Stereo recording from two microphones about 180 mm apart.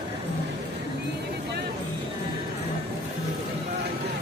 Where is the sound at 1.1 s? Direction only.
70° right (ahead or behind).